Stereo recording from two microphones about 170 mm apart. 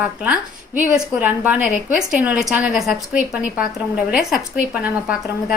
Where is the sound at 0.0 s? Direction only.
5° right (ahead or behind).